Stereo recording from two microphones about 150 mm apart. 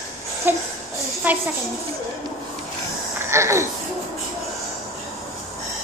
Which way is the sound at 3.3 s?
20° right (ahead or behind).